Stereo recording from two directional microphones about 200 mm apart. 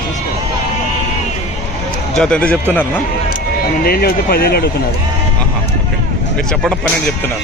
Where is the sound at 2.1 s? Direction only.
5° left (ahead or behind).